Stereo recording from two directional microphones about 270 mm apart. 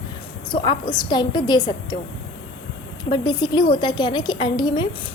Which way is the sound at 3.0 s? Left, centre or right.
Centre.